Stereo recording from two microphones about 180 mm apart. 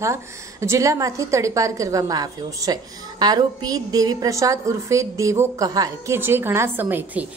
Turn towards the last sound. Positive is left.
turn(degrees=-10)  # may be behind; listen again after turning